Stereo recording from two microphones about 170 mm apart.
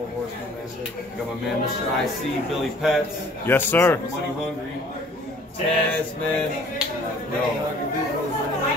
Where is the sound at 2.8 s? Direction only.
Centre (ahead or behind).